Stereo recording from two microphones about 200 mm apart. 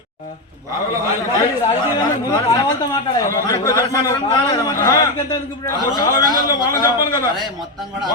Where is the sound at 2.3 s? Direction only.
20° left (ahead or behind).